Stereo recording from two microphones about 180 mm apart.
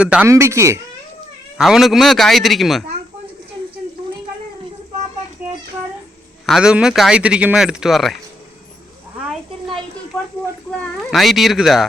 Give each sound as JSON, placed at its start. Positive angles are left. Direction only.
{"t": 0.0, "sound": "speech", "side_deg": -5}
{"t": 1.5, "sound": "a man's voice", "side_deg": 0}
{"t": 6.4, "sound": "a man's voice", "side_deg": 0}
{"t": 9.3, "sound": "a sound", "side_deg": 0}
{"t": 10.7, "sound": "speech", "side_deg": 5}